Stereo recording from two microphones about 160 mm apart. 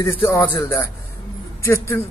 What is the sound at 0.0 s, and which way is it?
Speech, 15° left (ahead or behind).